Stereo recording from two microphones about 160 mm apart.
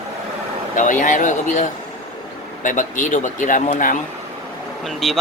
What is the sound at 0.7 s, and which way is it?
Speech, 55° left (ahead or behind).